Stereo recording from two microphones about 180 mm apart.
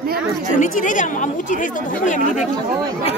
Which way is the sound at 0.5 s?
45° left (ahead or behind).